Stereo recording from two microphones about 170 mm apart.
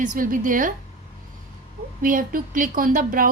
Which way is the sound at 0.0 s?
55° right (ahead or behind).